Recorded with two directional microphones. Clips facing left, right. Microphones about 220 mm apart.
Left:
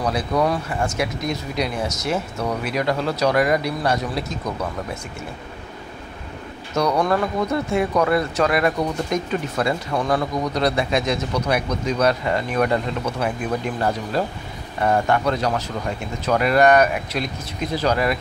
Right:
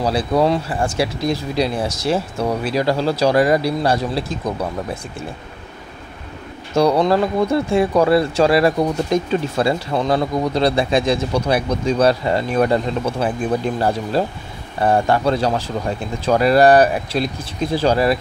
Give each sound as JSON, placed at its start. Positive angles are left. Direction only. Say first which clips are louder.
{"t": 0.0, "sound": "speech", "louder": "right 4 dB", "side_deg": -30}
{"t": 6.7, "sound": "speech", "louder": "right 5 dB", "side_deg": -30}